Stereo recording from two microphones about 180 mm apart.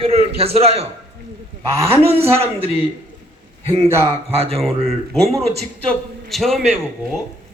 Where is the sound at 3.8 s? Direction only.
15° right (ahead or behind).